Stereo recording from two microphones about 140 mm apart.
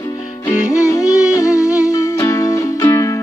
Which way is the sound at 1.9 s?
20° left (ahead or behind).